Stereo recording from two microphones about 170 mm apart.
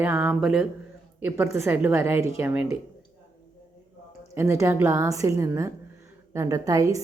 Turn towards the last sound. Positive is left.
turn(degrees=-20)  # may be behind; listen again after turning